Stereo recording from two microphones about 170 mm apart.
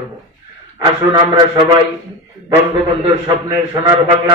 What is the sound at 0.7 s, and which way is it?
A man's voice, 25° right (ahead or behind).